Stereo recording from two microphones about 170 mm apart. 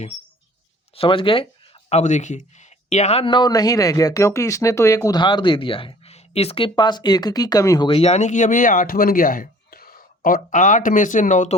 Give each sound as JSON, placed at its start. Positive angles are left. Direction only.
{"t": 0.9, "sound": "speech", "side_deg": 30}
{"t": 7.9, "sound": "speech", "side_deg": 35}